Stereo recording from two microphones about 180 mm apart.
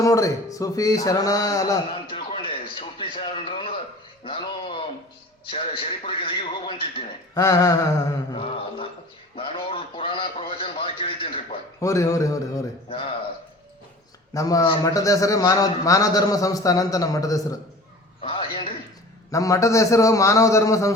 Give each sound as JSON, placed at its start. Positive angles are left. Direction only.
{"t": 0.0, "sound": "a man's voice", "side_deg": 15}
{"t": 4.2, "sound": "a sound", "side_deg": 30}
{"t": 5.5, "sound": "a man's voice", "side_deg": 30}
{"t": 7.3, "sound": "a man's voice", "side_deg": 20}
{"t": 8.4, "sound": "a sound", "side_deg": 30}
{"t": 11.8, "sound": "a man's voice", "side_deg": 15}
{"t": 12.9, "sound": "a man's voice", "side_deg": 35}
{"t": 14.3, "sound": "a man's voice", "side_deg": 20}
{"t": 18.2, "sound": "a sound", "side_deg": 30}
{"t": 19.3, "sound": "a man's voice", "side_deg": 15}